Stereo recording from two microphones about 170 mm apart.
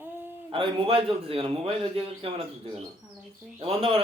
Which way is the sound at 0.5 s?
30° right (ahead or behind).